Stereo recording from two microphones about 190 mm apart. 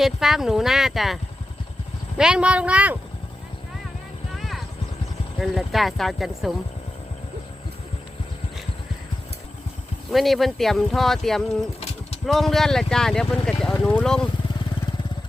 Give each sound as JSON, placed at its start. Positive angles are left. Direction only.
{"t": 0.0, "sound": "speech", "side_deg": 0}
{"t": 4.4, "sound": "vehicle", "side_deg": 0}
{"t": 5.4, "sound": "speech", "side_deg": 0}
{"t": 10.1, "sound": "speech", "side_deg": 0}